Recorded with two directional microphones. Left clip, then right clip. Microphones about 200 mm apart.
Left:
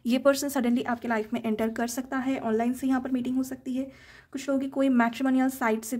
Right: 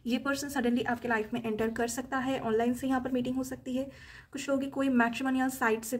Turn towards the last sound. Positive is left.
turn(degrees=35)  # may be behind; listen again after turning